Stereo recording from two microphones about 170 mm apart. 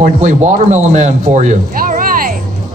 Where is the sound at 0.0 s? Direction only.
45° right (ahead or behind).